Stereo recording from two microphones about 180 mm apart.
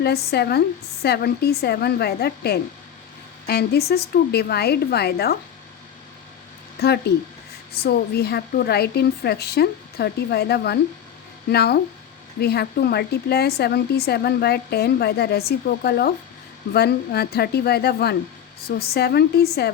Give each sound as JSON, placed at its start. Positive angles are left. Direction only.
{"t": 0.0, "sound": "a woman's voice", "side_deg": 60}
{"t": 6.7, "sound": "a woman's voice", "side_deg": 65}